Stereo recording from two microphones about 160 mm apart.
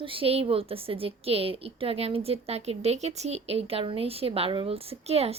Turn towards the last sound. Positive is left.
turn(degrees=-40)  # may be behind; listen again after turning